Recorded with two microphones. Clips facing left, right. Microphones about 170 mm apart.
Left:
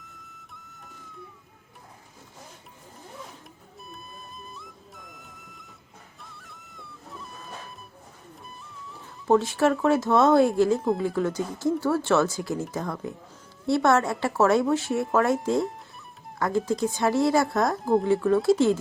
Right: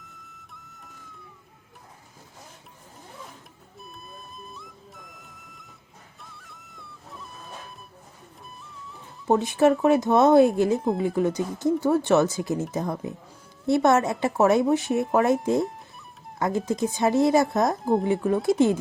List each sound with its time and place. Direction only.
0.0 s flute: centre (ahead or behind)
3.8 s music: centre (ahead or behind)
9.2 s speech: 20° right (ahead or behind)
16.4 s speech: 20° right (ahead or behind)